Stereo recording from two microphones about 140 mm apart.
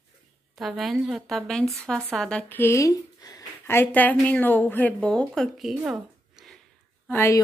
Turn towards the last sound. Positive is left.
turn(degrees=20)  # may be behind; listen again after turning